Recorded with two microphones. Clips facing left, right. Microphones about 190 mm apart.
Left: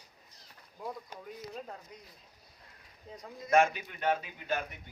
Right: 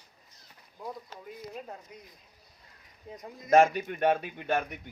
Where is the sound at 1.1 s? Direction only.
15° left (ahead or behind).